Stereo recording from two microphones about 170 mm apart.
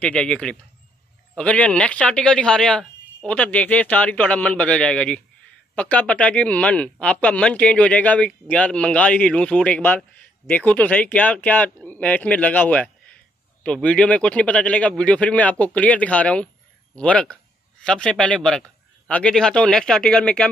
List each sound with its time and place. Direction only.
0.0 s a man's voice: 5° left (ahead or behind)